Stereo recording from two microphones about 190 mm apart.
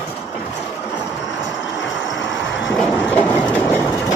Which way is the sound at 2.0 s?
75° left (ahead or behind).